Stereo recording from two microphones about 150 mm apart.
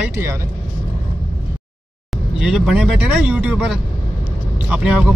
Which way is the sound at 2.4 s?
5° right (ahead or behind).